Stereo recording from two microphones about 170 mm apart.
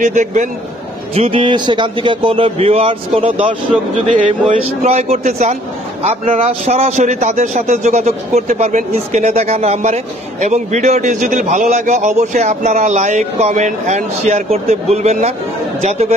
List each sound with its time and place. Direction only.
0.0 s a man's voice: 45° right (ahead or behind)
1.1 s a man's voice: 35° right (ahead or behind)